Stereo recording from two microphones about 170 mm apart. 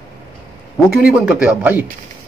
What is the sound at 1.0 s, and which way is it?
Speech, 5° right (ahead or behind).